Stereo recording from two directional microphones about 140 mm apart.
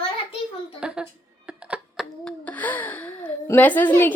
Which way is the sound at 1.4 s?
5° right (ahead or behind).